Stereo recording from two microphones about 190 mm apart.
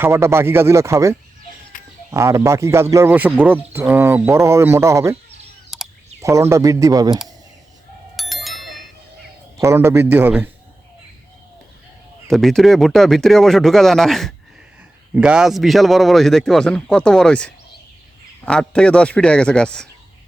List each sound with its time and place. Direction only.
0.0 s speech: 15° right (ahead or behind)
1.7 s a sound: 45° left (ahead or behind)
2.0 s speech: 15° right (ahead or behind)
5.7 s a sound: centre (ahead or behind)
6.2 s speech: 15° right (ahead or behind)
8.1 s bicycle bell: centre (ahead or behind)
9.6 s speech: 15° right (ahead or behind)
12.3 s a man's voice: centre (ahead or behind)